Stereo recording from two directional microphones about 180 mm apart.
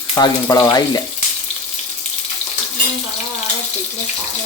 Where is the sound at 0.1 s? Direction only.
20° left (ahead or behind).